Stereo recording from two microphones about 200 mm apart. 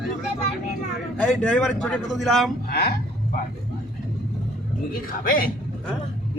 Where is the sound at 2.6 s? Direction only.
50° left (ahead or behind).